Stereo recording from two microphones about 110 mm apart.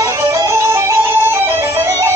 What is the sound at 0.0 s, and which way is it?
Music, 30° right (ahead or behind).